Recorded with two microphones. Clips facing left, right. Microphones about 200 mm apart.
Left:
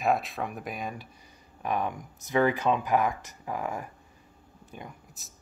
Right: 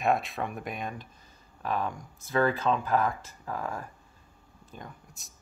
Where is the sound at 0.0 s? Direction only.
Centre (ahead or behind).